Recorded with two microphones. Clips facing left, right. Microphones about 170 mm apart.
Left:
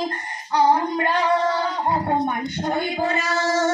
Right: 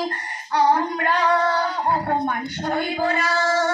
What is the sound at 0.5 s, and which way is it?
Speech, 25° left (ahead or behind).